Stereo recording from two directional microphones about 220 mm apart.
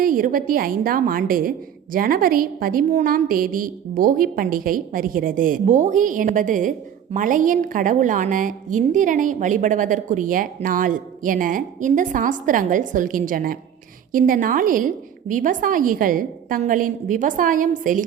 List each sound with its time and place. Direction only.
0.0 s a woman's voice: 40° right (ahead or behind)